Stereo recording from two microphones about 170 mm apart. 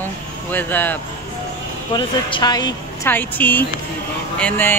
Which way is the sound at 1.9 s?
25° left (ahead or behind).